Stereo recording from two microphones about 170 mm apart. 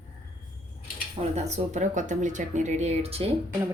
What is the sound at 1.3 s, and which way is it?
Speech, 40° right (ahead or behind).